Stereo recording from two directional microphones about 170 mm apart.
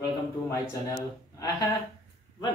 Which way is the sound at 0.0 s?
20° left (ahead or behind).